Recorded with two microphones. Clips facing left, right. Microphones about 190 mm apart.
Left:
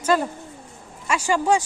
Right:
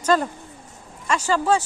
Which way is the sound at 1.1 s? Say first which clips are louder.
Even; 10° left (ahead or behind).